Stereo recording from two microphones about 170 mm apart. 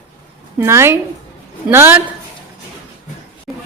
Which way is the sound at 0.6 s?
15° right (ahead or behind).